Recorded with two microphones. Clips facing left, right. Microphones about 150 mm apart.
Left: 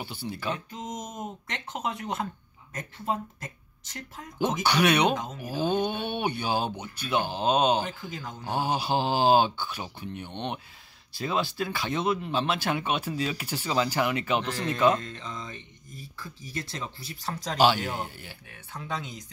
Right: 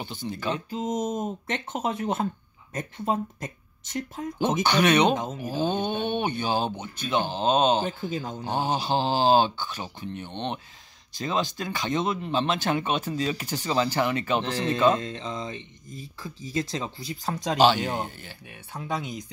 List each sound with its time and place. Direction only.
0.0 s speech: 10° left (ahead or behind)
1.0 s speech: 25° right (ahead or behind)
4.6 s speech: 5° left (ahead or behind)
5.1 s speech: 25° right (ahead or behind)
5.6 s speech: 10° left (ahead or behind)
7.8 s speech: 25° right (ahead or behind)
8.5 s speech: 10° left (ahead or behind)
14.4 s speech: 30° right (ahead or behind); by 19.2 s 10° right (ahead or behind)